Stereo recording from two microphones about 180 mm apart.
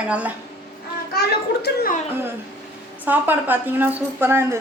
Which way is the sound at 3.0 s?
10° right (ahead or behind).